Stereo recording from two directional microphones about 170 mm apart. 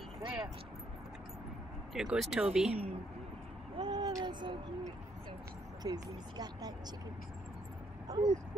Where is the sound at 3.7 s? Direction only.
30° right (ahead or behind).